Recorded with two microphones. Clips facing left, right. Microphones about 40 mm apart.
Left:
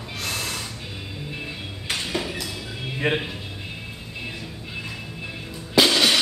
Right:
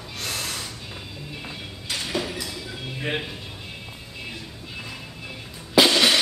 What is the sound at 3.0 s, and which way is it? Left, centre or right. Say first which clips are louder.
Speech: left 5 dB; left.